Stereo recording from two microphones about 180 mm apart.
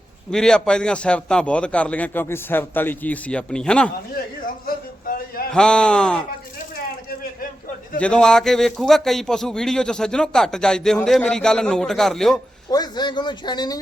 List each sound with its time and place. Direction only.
0.3 s a man's voice: 5° left (ahead or behind)
4.6 s a sound: 55° left (ahead or behind)
5.5 s speech: 5° left (ahead or behind)
7.9 s speech: 5° left (ahead or behind)
12.7 s speech: 25° left (ahead or behind)